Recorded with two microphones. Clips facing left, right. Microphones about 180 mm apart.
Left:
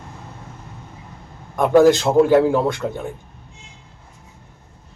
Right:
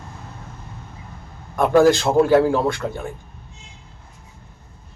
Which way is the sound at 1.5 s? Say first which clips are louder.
Left 2 dB; 20° left (ahead or behind).